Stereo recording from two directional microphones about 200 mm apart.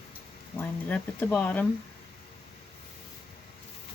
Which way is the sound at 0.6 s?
10° left (ahead or behind).